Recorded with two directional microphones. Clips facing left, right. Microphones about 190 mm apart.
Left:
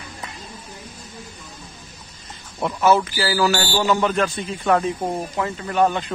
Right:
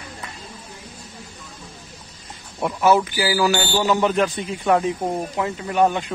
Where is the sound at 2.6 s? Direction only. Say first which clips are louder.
Even; 15° right (ahead or behind).